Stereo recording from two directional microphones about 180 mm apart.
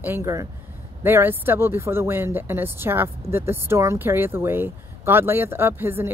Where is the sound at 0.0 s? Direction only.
15° right (ahead or behind).